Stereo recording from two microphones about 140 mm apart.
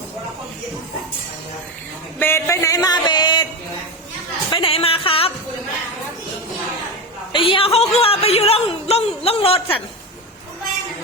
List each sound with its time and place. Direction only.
2.1 s a sound: 15° left (ahead or behind); by 3.4 s 30° left (ahead or behind)
4.5 s speech: 40° left (ahead or behind)
7.3 s speech: 40° left (ahead or behind)